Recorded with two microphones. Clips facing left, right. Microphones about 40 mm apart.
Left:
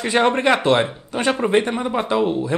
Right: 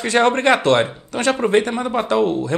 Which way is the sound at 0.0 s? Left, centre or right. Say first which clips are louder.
Right 1 dB; centre.